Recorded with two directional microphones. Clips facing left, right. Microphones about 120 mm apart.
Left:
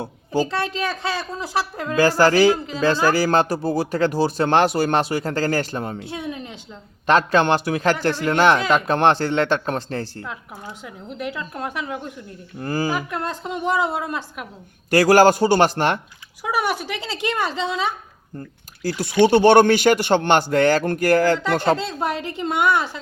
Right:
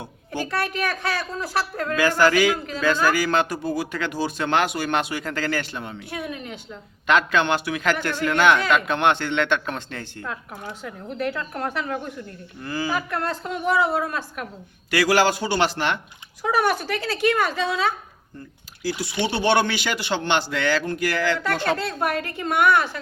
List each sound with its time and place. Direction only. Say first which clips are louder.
0.3 s a man's voice: left 4 dB; 25° left (ahead or behind)
2.0 s speech: left 4 dB; 35° left (ahead or behind)
6.0 s speech: left 2 dB; 25° left (ahead or behind)
7.1 s speech: left 3 dB; 35° left (ahead or behind)
10.2 s speech: right 1 dB; 10° left (ahead or behind)
12.5 s speech: left 5 dB; 40° left (ahead or behind)
12.9 s speech: even; 15° left (ahead or behind)
14.8 s a man's voice: left 6 dB; 45° left (ahead or behind)
16.4 s speech: right 2 dB; 10° left (ahead or behind)
18.8 s a man's voice: left 8 dB; 50° left (ahead or behind)
21.4 s a man's voice: left 4 dB; 15° left (ahead or behind)